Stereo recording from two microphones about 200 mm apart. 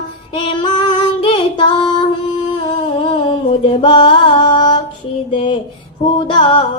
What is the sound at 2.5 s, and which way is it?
Humming, 25° left (ahead or behind).